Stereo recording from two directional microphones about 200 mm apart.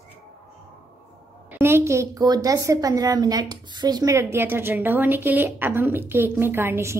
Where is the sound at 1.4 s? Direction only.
10° right (ahead or behind).